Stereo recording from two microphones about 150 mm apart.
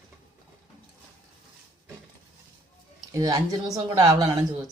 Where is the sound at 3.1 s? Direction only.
25° right (ahead or behind).